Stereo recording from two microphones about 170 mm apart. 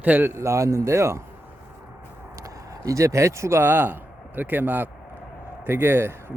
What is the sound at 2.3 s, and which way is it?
A man's voice, 20° right (ahead or behind).